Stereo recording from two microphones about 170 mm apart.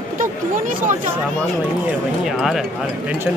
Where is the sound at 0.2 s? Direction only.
50° right (ahead or behind).